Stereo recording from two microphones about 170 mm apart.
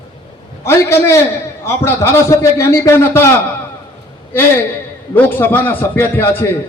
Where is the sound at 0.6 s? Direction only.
15° left (ahead or behind).